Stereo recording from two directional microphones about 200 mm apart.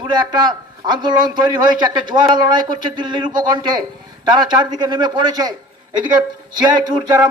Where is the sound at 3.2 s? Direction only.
20° right (ahead or behind).